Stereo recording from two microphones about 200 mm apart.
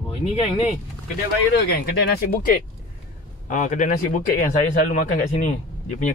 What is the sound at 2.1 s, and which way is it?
Speech, 50° left (ahead or behind).